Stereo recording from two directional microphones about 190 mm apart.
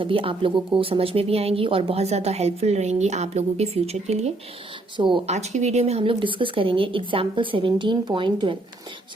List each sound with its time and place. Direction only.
0.0 s speech: 30° right (ahead or behind)
4.9 s speech: 25° right (ahead or behind)
5.3 s speech: 35° right (ahead or behind)